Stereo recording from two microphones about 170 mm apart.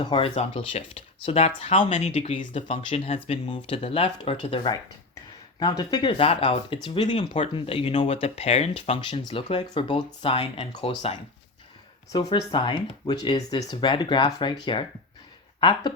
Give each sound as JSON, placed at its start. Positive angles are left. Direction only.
{"t": 0.0, "sound": "speech", "side_deg": 30}